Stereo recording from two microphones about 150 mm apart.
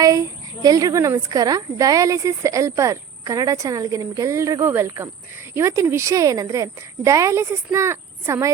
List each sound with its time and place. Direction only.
0.0 s speech: 25° right (ahead or behind)